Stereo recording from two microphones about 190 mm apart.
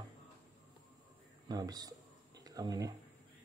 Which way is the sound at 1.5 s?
20° right (ahead or behind).